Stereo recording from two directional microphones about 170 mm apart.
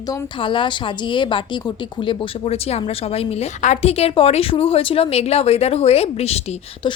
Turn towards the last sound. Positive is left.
turn(degrees=35)  # may be behind; listen again after turning